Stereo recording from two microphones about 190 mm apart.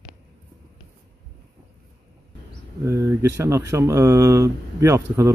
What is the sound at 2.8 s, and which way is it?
Speech, 15° right (ahead or behind).